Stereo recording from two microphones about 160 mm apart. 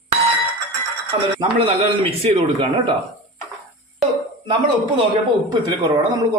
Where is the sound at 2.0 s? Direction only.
35° right (ahead or behind).